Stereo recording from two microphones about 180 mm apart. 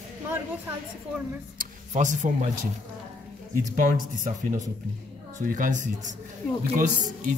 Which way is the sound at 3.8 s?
45° right (ahead or behind).